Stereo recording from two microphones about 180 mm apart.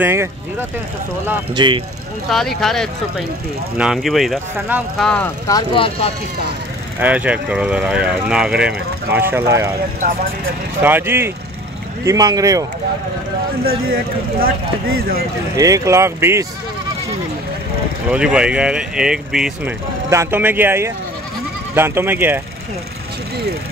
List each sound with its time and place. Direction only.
0.0 s speech: 15° right (ahead or behind)
1.5 s speech: 25° right (ahead or behind)
2.2 s speech: centre (ahead or behind)
4.9 s speech: 5° left (ahead or behind)
5.5 s speech: 25° left (ahead or behind)
7.0 s speech: 10° right (ahead or behind)
10.8 s speech: 10° right (ahead or behind)
15.0 s speech: 55° right (ahead or behind)
15.5 s speech: 20° right (ahead or behind)
18.1 s speech: 5° right (ahead or behind)
20.1 s speech: 15° right (ahead or behind)